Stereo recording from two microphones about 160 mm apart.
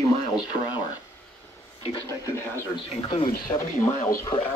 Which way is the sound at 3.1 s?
35° left (ahead or behind).